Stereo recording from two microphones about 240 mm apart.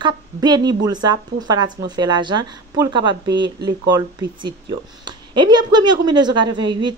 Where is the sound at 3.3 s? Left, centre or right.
Right.